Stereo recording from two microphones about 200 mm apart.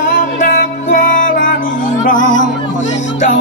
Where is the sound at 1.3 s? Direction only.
40° left (ahead or behind).